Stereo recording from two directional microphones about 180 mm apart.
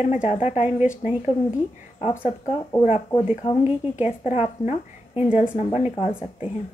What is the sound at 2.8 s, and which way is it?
A woman's voice, 40° left (ahead or behind).